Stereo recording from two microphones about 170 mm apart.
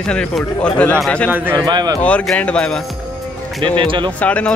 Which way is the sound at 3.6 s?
30° right (ahead or behind).